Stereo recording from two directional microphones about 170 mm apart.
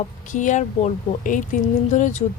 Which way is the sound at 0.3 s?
45° left (ahead or behind).